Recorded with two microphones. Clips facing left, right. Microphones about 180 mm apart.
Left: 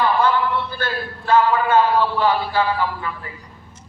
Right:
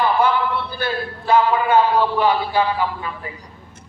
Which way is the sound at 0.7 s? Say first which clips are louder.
Right 2 dB; 15° right (ahead or behind).